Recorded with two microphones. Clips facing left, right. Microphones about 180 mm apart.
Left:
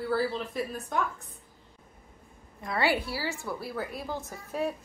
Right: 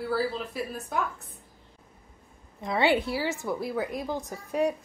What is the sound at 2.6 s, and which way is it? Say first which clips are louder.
A woman's voice: right 4 dB; 20° right (ahead or behind).